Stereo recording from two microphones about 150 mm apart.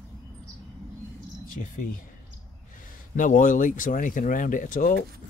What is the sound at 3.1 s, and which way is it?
Speech, 60° left (ahead or behind).